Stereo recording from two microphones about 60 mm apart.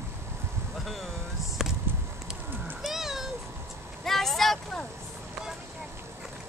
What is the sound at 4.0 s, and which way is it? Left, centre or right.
Vehicle, centre.